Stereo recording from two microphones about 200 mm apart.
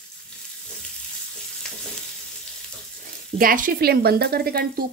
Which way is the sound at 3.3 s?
45° right (ahead or behind).